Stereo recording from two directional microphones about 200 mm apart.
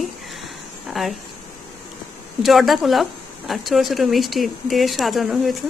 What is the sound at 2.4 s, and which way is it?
Speech, centre (ahead or behind).